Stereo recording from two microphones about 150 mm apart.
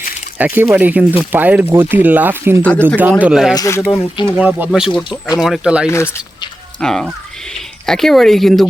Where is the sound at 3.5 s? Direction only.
20° left (ahead or behind).